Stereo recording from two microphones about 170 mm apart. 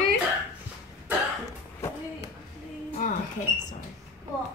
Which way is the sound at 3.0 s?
45° left (ahead or behind).